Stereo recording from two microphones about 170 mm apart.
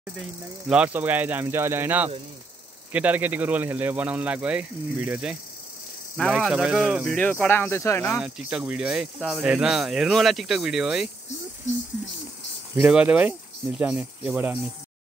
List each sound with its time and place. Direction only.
0.7 s a man's voice: 10° right (ahead or behind)
7.2 s speech: 10° left (ahead or behind)
8.2 s speech: 5° right (ahead or behind)
12.7 s a man's voice: 10° right (ahead or behind)